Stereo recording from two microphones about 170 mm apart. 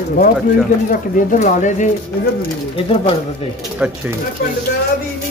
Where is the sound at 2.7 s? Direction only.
30° left (ahead or behind).